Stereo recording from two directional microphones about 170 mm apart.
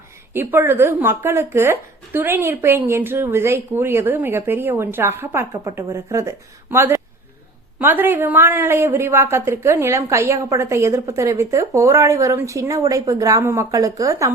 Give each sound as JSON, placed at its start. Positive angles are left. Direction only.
{"t": 0.3, "sound": "speech", "side_deg": -10}